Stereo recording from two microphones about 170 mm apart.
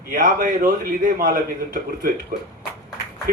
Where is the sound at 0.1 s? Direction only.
55° right (ahead or behind).